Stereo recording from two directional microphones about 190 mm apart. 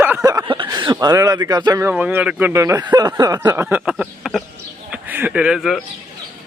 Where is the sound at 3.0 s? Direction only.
20° right (ahead or behind); by 5.8 s centre (ahead or behind).